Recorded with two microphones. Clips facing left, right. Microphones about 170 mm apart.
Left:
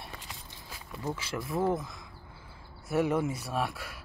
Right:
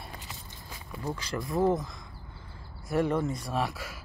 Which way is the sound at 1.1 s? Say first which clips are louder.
Right 4 dB; 5° left (ahead or behind).